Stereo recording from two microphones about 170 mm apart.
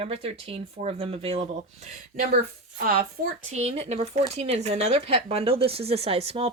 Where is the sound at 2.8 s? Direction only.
65° right (ahead or behind).